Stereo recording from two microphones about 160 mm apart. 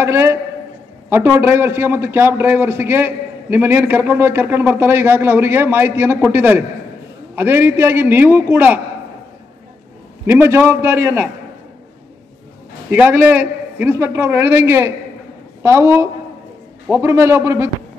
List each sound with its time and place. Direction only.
0.0 s a man's voice: 15° right (ahead or behind)
10.2 s a man's voice: 15° right (ahead or behind)
12.9 s a man's voice: 10° right (ahead or behind)